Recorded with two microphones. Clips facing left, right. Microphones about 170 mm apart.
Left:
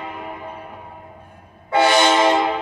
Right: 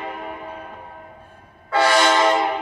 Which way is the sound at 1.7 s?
20° left (ahead or behind).